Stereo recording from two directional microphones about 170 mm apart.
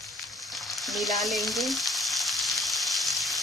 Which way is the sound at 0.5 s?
Centre (ahead or behind).